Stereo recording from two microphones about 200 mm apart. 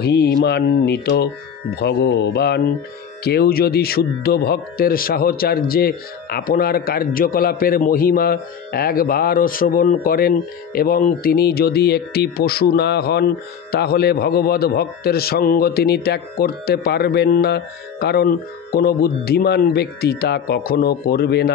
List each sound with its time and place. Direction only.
0.0 s speech: 55° left (ahead or behind)